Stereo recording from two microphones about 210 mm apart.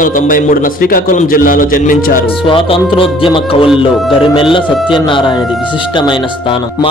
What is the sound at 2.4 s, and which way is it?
Speech, 25° left (ahead or behind).